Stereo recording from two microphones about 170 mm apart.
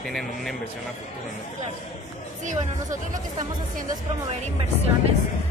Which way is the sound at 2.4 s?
45° right (ahead or behind).